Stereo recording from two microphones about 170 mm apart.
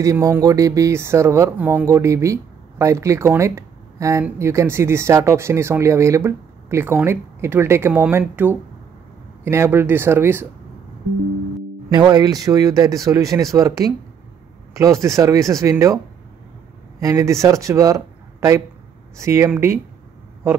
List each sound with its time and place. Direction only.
0.0 s speech: 20° right (ahead or behind)
11.9 s speech: 25° right (ahead or behind)
17.0 s speech: 20° right (ahead or behind)